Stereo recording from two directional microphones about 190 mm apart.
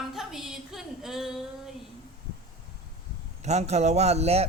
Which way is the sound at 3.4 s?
35° right (ahead or behind).